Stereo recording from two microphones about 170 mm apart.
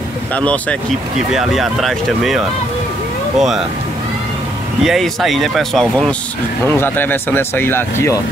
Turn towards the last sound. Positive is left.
turn(degrees=15)  # may be behind; listen again after turning